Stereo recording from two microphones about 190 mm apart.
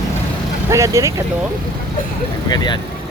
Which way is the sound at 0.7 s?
15° right (ahead or behind).